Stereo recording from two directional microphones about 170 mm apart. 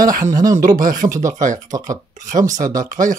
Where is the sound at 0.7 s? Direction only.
50° right (ahead or behind).